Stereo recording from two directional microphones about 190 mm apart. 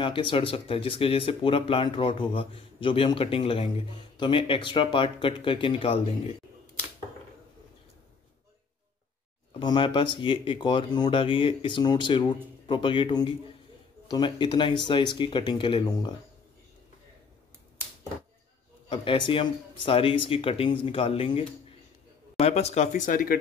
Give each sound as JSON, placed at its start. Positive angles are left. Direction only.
{"t": 0.0, "sound": "speech", "side_deg": 25}
{"t": 9.5, "sound": "speech", "side_deg": 25}
{"t": 18.9, "sound": "speech", "side_deg": 25}